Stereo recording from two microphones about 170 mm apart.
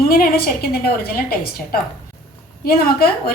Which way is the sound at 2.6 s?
65° left (ahead or behind).